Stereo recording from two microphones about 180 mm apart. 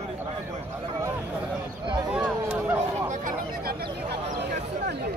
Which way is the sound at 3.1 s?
55° right (ahead or behind).